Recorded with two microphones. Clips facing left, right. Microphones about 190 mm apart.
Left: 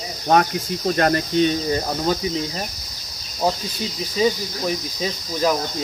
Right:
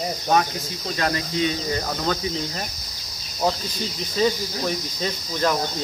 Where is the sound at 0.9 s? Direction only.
50° left (ahead or behind).